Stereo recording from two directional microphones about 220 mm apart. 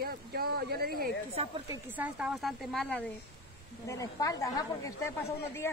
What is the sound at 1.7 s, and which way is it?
Speech, 5° right (ahead or behind).